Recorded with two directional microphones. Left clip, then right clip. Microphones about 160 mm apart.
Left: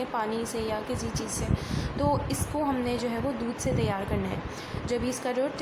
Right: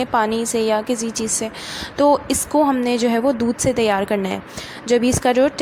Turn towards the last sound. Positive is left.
turn(degrees=-40)  # may be behind; listen again after turning